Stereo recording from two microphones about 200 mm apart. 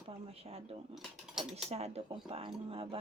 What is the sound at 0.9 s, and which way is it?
Cutlery, centre (ahead or behind).